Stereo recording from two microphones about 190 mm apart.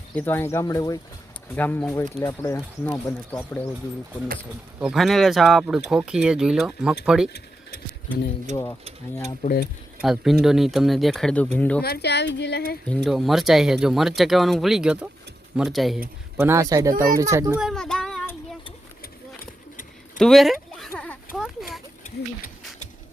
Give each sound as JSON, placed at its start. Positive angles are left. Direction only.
{"t": 0.1, "sound": "speech", "side_deg": 10}
{"t": 4.8, "sound": "speech", "side_deg": -5}
{"t": 7.3, "sound": "a sound", "side_deg": 55}
{"t": 9.4, "sound": "speech", "side_deg": 50}
{"t": 10.0, "sound": "speech", "side_deg": 0}
{"t": 11.8, "sound": "speech", "side_deg": 60}
{"t": 12.9, "sound": "speech", "side_deg": 0}
{"t": 16.4, "sound": "speech", "side_deg": -15}
{"t": 17.6, "sound": "child singing", "side_deg": 0}
{"t": 20.1, "sound": "a sound", "side_deg": 0}